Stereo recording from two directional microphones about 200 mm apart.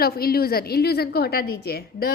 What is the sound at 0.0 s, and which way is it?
A woman's voice, 50° left (ahead or behind).